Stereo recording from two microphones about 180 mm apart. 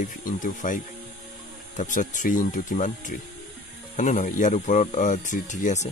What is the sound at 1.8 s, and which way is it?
Speech, 45° left (ahead or behind).